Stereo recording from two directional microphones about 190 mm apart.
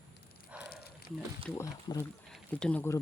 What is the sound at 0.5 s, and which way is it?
Fire, 5° right (ahead or behind).